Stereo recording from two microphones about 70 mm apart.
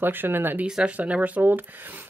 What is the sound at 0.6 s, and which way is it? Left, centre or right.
Speech, centre.